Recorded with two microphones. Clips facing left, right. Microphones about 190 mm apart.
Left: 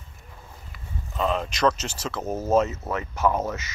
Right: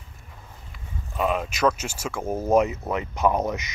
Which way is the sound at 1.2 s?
10° right (ahead or behind).